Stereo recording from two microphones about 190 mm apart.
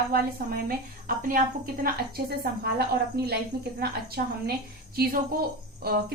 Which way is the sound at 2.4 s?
55° right (ahead or behind).